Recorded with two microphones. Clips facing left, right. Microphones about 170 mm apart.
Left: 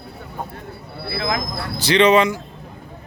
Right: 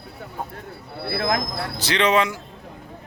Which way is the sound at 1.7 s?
Centre (ahead or behind).